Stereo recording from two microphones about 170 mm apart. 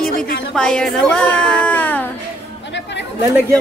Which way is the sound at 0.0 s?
5° left (ahead or behind).